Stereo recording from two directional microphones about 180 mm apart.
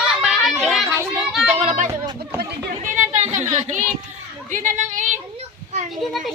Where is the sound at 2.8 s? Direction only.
45° right (ahead or behind).